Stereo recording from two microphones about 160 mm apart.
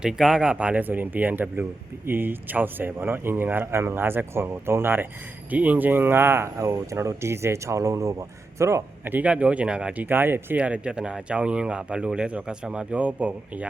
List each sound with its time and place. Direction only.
0.0 s speech: 5° right (ahead or behind)